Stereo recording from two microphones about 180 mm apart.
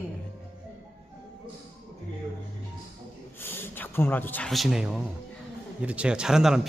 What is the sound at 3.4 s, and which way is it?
A man's voice, 10° left (ahead or behind).